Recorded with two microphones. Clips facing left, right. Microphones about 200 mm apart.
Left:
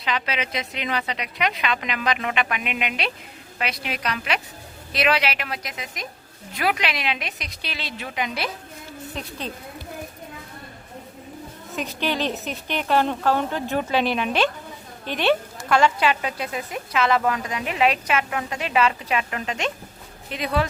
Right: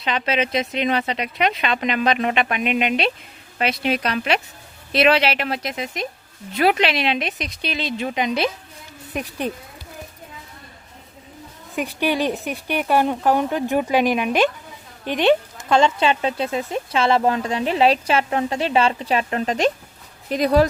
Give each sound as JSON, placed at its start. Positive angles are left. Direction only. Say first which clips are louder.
{"t": 0.0, "sound": "speech", "louder": "right 5 dB", "side_deg": -25}
{"t": 11.8, "sound": "a woman's voice", "louder": "right 4 dB", "side_deg": -15}